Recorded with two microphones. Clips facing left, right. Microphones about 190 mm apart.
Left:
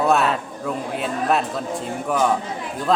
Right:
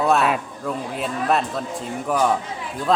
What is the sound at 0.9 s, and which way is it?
Speech, centre (ahead or behind).